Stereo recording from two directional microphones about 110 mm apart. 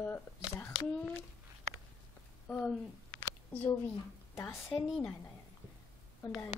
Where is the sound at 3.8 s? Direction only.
20° left (ahead or behind).